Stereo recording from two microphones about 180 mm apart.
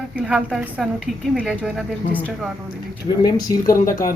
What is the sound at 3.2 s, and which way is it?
Speech, 20° left (ahead or behind).